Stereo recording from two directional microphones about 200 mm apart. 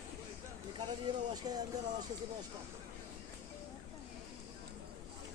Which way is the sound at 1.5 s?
20° right (ahead or behind).